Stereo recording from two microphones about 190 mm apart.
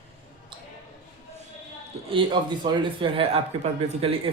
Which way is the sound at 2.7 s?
25° right (ahead or behind).